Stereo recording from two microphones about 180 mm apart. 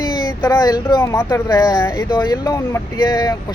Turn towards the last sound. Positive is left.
turn(degrees=20)  # may be behind; listen again after turning